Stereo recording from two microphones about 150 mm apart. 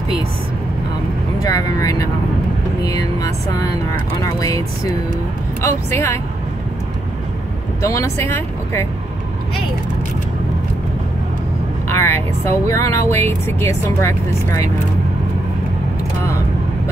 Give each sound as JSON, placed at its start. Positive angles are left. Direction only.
{"t": 1.4, "sound": "speech", "side_deg": 25}
{"t": 7.8, "sound": "speech", "side_deg": 20}
{"t": 11.9, "sound": "speech", "side_deg": 15}